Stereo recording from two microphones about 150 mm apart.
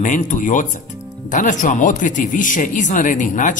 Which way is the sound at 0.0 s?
60° left (ahead or behind).